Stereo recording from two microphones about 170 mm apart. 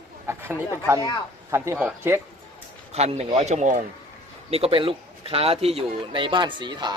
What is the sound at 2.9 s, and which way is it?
Speech, 40° right (ahead or behind).